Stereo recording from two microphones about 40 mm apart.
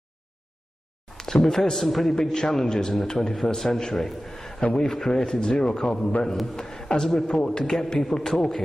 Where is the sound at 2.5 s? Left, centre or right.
Centre.